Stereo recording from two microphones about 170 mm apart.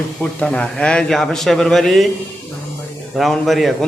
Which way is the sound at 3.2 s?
Centre (ahead or behind).